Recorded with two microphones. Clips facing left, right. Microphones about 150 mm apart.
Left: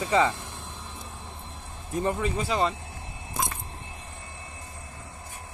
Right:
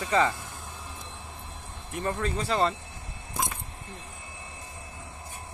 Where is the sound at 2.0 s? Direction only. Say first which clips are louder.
Left 2 dB; 10° left (ahead or behind).